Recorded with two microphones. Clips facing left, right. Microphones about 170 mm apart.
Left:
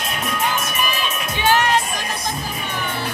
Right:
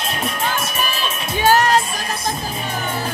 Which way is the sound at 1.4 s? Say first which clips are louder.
Right 3 dB; 40° right (ahead or behind).